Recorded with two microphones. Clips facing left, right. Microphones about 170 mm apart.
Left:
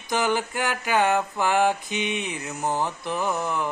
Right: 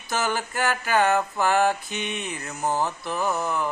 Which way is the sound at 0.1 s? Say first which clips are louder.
Left 3 dB; 15° left (ahead or behind).